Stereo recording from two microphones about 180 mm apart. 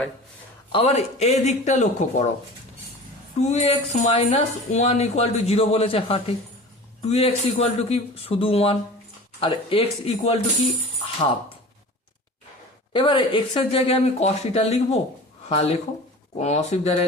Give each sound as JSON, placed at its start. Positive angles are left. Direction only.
{"t": 0.7, "sound": "speech", "side_deg": 35}
{"t": 3.3, "sound": "speech", "side_deg": 35}
{"t": 12.9, "sound": "speech", "side_deg": 25}